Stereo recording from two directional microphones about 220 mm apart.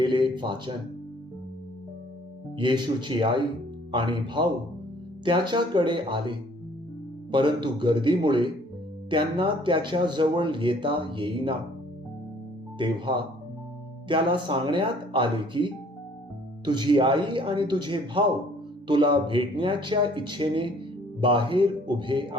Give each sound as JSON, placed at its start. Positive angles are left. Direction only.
{"t": 0.0, "sound": "a sound", "side_deg": -20}
{"t": 2.6, "sound": "speech", "side_deg": -20}
{"t": 12.8, "sound": "speech", "side_deg": -20}